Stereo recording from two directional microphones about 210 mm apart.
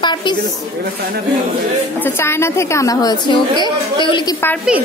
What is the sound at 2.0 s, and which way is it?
A woman's voice, 10° left (ahead or behind).